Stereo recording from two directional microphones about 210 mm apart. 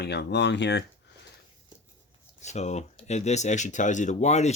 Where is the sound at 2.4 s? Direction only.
35° left (ahead or behind).